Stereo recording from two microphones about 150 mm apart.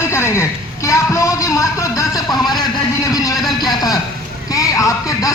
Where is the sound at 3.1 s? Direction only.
25° left (ahead or behind).